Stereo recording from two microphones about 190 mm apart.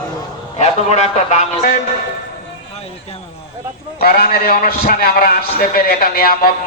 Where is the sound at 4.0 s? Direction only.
50° left (ahead or behind).